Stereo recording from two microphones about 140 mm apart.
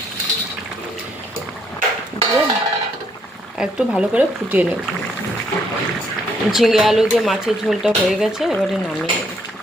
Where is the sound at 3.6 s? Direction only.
5° right (ahead or behind).